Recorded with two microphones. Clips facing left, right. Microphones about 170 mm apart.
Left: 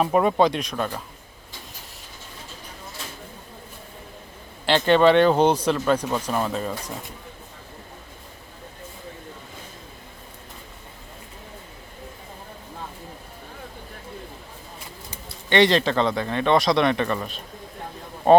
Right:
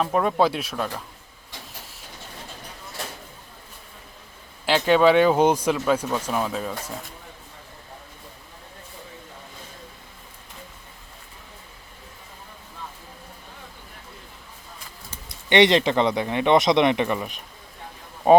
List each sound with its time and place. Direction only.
0.0 s speech: 5° left (ahead or behind)
4.6 s speech: 5° right (ahead or behind)
15.4 s speech: 20° right (ahead or behind)